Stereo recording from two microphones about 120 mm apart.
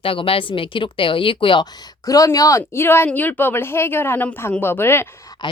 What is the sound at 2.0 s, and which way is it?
Speech, 30° left (ahead or behind).